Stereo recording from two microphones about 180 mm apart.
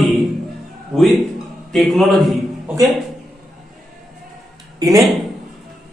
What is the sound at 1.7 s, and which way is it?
Speech, centre (ahead or behind).